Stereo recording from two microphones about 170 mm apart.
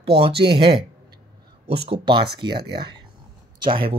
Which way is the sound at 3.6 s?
30° right (ahead or behind).